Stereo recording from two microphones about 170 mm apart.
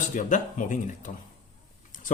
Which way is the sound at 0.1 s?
50° left (ahead or behind).